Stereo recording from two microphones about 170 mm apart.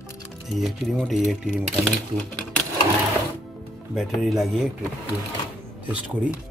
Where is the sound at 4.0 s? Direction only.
Centre (ahead or behind).